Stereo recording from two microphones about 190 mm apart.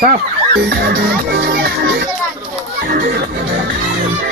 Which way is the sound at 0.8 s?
55° right (ahead or behind).